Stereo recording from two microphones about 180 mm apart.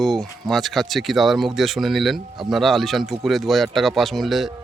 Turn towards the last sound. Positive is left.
turn(degrees=0)  # may be behind; listen again after turning